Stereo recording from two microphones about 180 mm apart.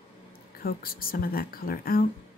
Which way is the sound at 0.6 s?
55° left (ahead or behind).